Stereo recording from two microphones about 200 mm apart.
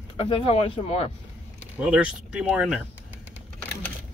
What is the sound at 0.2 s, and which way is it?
Speech, 30° left (ahead or behind).